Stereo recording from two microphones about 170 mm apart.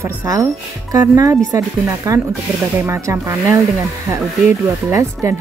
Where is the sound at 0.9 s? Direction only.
20° right (ahead or behind).